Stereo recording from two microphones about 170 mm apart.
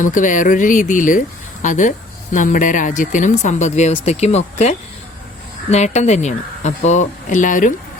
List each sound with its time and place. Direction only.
0.0 s speech: 50° left (ahead or behind)